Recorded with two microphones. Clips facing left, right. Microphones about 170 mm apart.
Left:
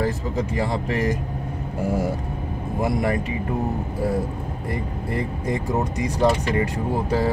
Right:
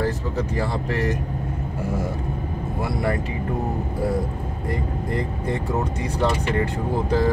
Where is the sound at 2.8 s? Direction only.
20° left (ahead or behind).